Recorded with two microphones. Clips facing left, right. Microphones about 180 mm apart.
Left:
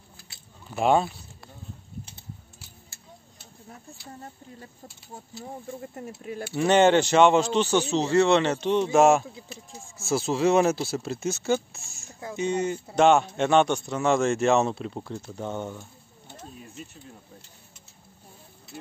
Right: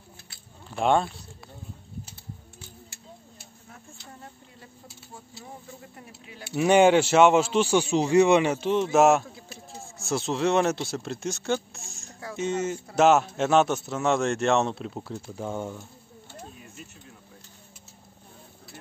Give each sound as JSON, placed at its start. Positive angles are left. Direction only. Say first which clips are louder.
{"t": 0.7, "sound": "a man's voice", "louder": "left 1 dB", "side_deg": 5}
{"t": 5.7, "sound": "speech", "louder": "left 8 dB", "side_deg": 45}
{"t": 6.5, "sound": "a man's voice", "louder": "right 1 dB", "side_deg": -10}
{"t": 11.9, "sound": "a sound", "louder": "right 1 dB", "side_deg": 0}
{"t": 12.4, "sound": "a man's voice", "louder": "left 1 dB", "side_deg": 0}